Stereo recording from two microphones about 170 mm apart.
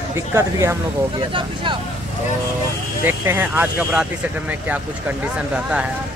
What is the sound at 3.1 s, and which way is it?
Speech, 10° right (ahead or behind).